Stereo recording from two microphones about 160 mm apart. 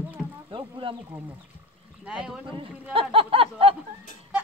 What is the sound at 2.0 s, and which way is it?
Speech, 5° right (ahead or behind).